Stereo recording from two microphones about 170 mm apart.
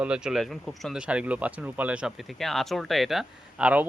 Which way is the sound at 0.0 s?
5° right (ahead or behind).